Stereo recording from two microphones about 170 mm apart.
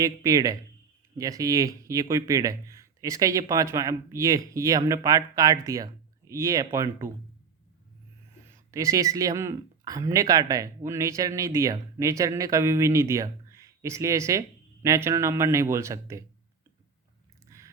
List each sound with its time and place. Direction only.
0.0 s speech: 20° right (ahead or behind)
8.7 s speech: 20° right (ahead or behind)
17.5 s a sound: 20° right (ahead or behind)